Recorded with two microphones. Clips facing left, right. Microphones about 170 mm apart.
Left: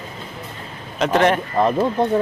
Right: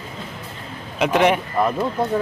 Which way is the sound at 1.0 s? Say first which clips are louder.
Even; 10° right (ahead or behind).